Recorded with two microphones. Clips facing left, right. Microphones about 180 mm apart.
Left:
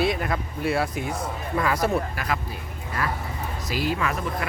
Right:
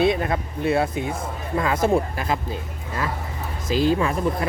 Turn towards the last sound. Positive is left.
turn(degrees=-30)  # may be behind; listen again after turning